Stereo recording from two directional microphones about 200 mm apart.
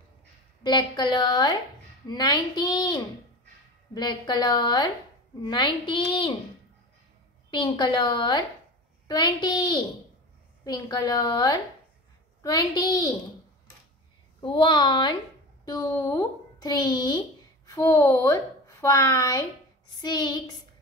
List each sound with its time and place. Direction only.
0.7 s a woman's voice: 20° left (ahead or behind)
7.5 s a woman's voice: 20° left (ahead or behind)
14.4 s a woman's voice: 25° left (ahead or behind)